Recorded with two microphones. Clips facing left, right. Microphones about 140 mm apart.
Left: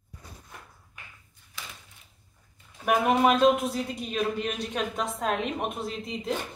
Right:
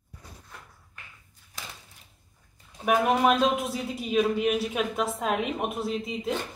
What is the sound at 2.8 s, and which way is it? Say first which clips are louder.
A man's voice: even; centre (ahead or behind).